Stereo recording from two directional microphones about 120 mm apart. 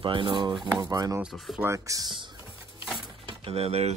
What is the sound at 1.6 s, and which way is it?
Speech, 25° right (ahead or behind).